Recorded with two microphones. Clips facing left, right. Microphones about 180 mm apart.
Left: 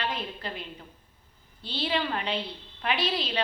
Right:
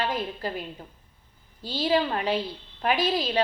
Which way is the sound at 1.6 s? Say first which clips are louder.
Right 5 dB; 45° right (ahead or behind).